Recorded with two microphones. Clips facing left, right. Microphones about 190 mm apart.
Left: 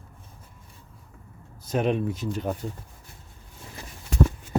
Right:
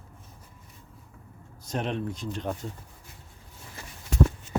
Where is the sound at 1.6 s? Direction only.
5° left (ahead or behind).